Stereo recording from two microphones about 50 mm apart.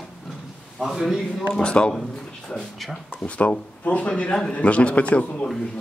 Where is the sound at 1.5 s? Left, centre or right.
Centre.